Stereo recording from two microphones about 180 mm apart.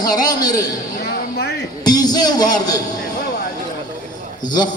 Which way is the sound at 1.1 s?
65° left (ahead or behind).